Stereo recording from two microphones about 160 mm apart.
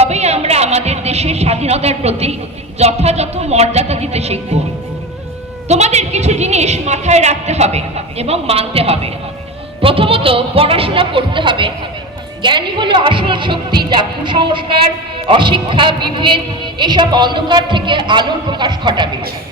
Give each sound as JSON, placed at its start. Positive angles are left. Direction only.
{"t": 0.0, "sound": "a woman's voice", "side_deg": -40}
{"t": 5.6, "sound": "a woman's voice", "side_deg": -45}